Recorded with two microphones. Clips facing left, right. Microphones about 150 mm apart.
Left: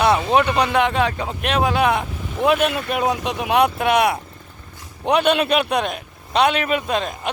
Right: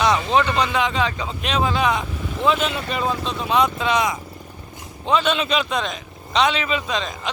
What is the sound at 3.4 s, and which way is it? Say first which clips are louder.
A man's voice: left 3 dB; 65° left (ahead or behind).